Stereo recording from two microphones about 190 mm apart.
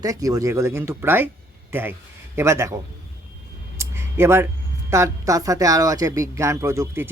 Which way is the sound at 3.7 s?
15° right (ahead or behind).